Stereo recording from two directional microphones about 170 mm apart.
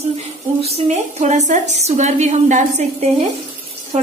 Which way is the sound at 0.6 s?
35° right (ahead or behind).